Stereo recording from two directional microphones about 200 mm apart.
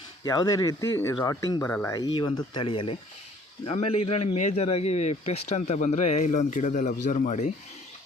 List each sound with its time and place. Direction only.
0.3 s a man's voice: 20° left (ahead or behind); by 7.5 s 35° left (ahead or behind)